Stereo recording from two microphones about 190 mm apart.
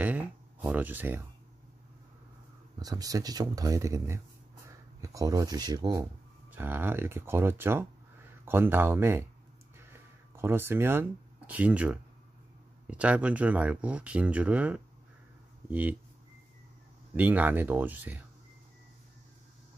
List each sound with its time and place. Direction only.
0.7 s speech: 10° right (ahead or behind)
2.8 s speech: 20° right (ahead or behind)
10.3 s speech: 10° right (ahead or behind)
17.1 s speech: 10° right (ahead or behind)